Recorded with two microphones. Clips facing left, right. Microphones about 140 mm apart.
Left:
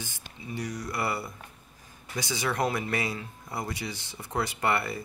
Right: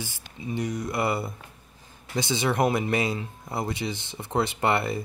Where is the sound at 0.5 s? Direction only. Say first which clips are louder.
Right 5 dB; 25° right (ahead or behind).